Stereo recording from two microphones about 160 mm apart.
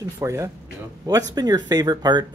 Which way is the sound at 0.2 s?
20° right (ahead or behind).